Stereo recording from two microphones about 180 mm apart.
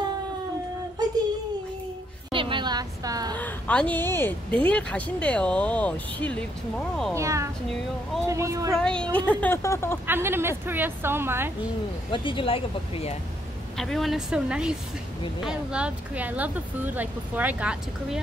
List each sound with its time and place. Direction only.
2.3 s a sound: 30° right (ahead or behind)
3.3 s speech: 10° left (ahead or behind)
7.2 s speech: 15° right (ahead or behind)
8.7 s speech: 5° left (ahead or behind)
10.0 s speech: 10° right (ahead or behind)
12.1 s speech: 25° left (ahead or behind)
13.7 s speech: centre (ahead or behind)